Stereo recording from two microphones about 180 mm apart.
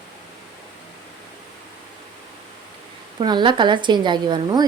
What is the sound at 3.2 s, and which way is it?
A woman's voice, 25° right (ahead or behind).